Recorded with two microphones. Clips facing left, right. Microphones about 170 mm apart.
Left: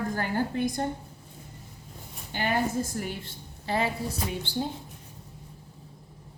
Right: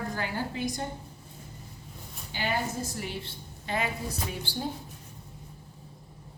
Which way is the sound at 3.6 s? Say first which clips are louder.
Left 3 dB; 35° left (ahead or behind).